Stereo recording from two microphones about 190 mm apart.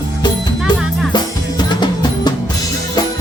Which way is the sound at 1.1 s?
25° left (ahead or behind).